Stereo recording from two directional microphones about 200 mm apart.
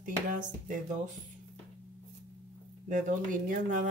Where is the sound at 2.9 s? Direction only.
40° right (ahead or behind).